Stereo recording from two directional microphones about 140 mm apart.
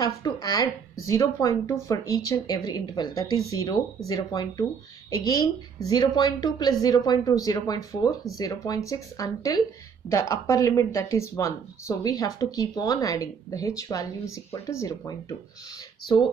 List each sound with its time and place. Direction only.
0.0 s speech: 25° left (ahead or behind)